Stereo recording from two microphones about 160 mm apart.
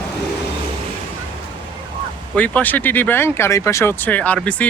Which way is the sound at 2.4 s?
10° left (ahead or behind).